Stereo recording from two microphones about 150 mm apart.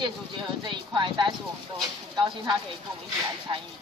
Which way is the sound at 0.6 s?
30° right (ahead or behind).